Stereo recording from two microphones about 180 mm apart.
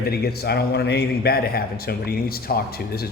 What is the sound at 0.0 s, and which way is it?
A man's voice, 60° left (ahead or behind).